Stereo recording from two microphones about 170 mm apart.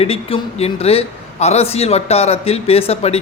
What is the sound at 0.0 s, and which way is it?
A man's voice, 35° left (ahead or behind).